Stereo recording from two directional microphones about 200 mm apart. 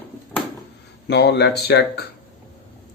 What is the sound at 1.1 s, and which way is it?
Speech, 55° left (ahead or behind).